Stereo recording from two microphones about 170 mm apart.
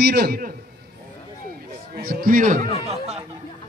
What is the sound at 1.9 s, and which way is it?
Speech, 60° right (ahead or behind).